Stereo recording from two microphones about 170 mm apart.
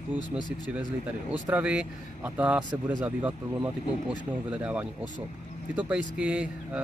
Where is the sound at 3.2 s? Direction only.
10° right (ahead or behind).